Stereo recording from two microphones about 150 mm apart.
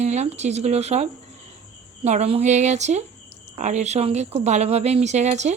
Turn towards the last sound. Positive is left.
turn(degrees=-50)  # may be behind; listen again after turning